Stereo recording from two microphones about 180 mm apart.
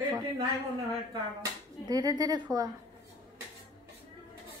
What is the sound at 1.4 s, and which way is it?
Speech, 20° right (ahead or behind).